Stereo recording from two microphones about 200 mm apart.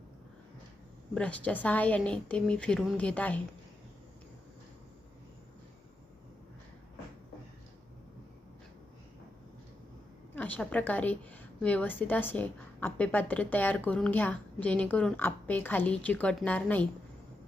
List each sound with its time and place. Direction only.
1.1 s a woman's voice: 5° left (ahead or behind)
10.3 s a woman's voice: 10° left (ahead or behind)